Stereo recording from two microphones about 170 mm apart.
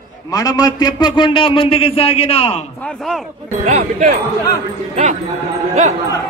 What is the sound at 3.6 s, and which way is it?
Speech, 40° right (ahead or behind).